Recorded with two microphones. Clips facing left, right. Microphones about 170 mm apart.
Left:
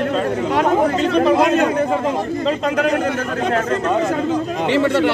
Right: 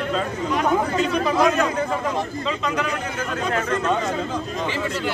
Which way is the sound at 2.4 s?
50° left (ahead or behind).